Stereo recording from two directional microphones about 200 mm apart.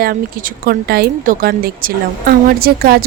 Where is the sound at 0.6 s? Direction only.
50° right (ahead or behind).